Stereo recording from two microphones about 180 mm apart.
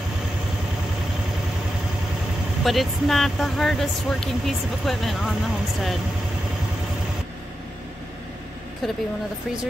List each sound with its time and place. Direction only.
2.6 s speech: centre (ahead or behind)
8.8 s speech: centre (ahead or behind)